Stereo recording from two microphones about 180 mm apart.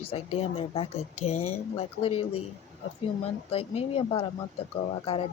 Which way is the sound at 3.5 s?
35° left (ahead or behind).